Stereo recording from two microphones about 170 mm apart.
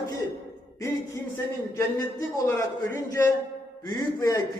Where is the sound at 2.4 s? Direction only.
15° left (ahead or behind).